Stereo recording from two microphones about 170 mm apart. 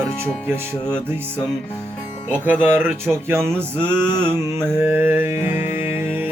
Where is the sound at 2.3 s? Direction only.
10° right (ahead or behind).